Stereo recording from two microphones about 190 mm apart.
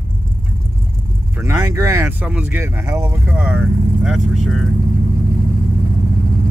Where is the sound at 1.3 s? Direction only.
15° right (ahead or behind).